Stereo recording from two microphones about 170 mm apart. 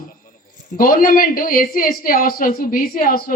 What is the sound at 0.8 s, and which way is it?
Speech, 55° left (ahead or behind).